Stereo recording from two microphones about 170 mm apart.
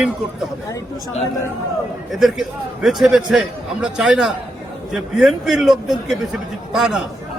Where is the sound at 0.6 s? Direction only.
20° left (ahead or behind).